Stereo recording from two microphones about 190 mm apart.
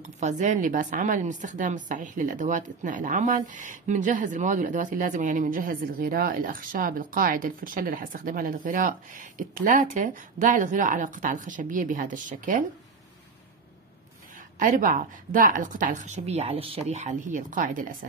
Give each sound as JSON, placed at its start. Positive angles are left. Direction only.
{"t": 0.2, "sound": "a woman's voice", "side_deg": -40}
{"t": 14.6, "sound": "a woman's voice", "side_deg": -45}